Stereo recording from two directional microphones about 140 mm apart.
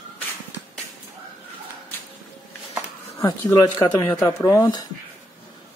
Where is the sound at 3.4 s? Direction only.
15° left (ahead or behind).